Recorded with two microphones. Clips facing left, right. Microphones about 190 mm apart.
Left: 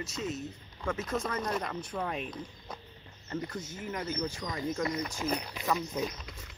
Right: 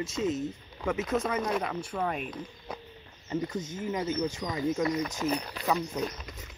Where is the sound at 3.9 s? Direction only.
20° right (ahead or behind).